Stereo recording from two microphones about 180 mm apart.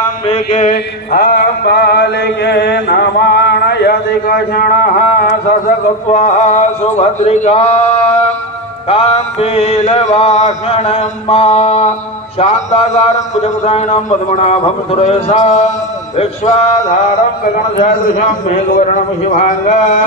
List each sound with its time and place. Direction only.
0.3 s mantra: 35° left (ahead or behind)
1.1 s mantra: 60° left (ahead or behind)
6.1 s mantra: 40° left (ahead or behind)
17.7 s a man's voice: 45° left (ahead or behind)